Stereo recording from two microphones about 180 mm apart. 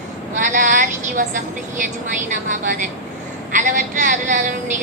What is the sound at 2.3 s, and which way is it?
A woman's voice, 45° right (ahead or behind).